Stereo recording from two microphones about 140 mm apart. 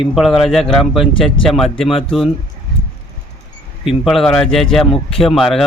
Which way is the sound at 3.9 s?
Centre (ahead or behind).